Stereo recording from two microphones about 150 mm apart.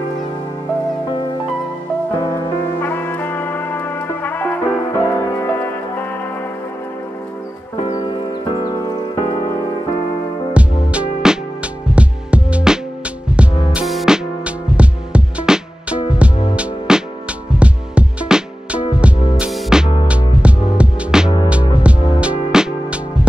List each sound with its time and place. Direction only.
2.3 s music: 15° left (ahead or behind)
8.1 s music: 30° left (ahead or behind)
10.5 s music: 5° right (ahead or behind)